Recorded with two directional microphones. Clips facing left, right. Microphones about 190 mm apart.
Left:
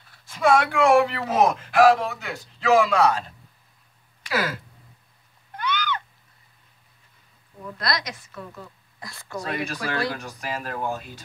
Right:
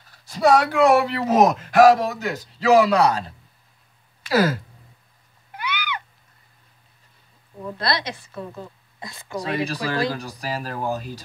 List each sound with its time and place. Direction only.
0.0 s speech: 40° right (ahead or behind)
5.5 s a sound: 10° right (ahead or behind)
7.6 s a woman's voice: 30° right (ahead or behind)
9.5 s a woman's voice: 30° right (ahead or behind)
10.2 s speech: 35° right (ahead or behind)